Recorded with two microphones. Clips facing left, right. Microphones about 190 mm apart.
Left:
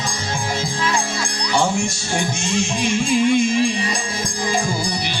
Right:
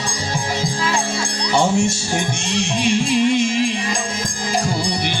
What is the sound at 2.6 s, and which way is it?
Music, 65° right (ahead or behind).